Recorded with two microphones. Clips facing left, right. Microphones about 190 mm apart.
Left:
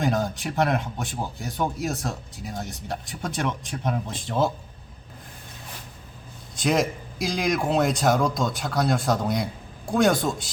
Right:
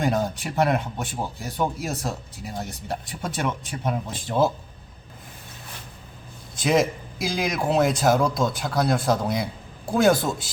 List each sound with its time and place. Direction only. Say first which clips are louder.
0.0 s speech: right 1 dB; centre (ahead or behind)
6.6 s speech: right 2 dB; centre (ahead or behind)